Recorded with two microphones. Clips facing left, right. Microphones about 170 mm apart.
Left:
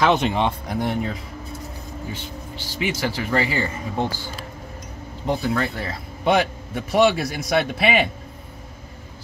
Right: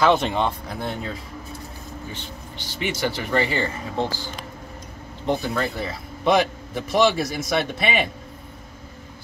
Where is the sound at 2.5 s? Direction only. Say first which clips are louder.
Left 2 dB; 5° left (ahead or behind).